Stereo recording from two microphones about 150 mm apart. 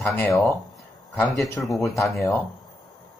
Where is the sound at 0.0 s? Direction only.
15° left (ahead or behind).